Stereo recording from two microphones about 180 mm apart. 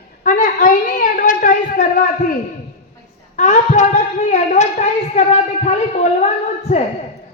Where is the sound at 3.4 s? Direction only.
45° left (ahead or behind).